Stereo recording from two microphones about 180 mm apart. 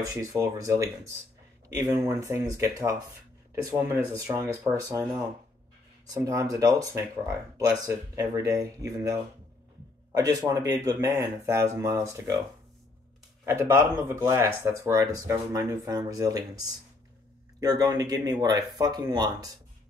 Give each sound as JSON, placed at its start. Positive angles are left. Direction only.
{"t": 0.1, "sound": "speech", "side_deg": -15}
{"t": 6.2, "sound": "speech", "side_deg": -20}
{"t": 13.5, "sound": "speech", "side_deg": -15}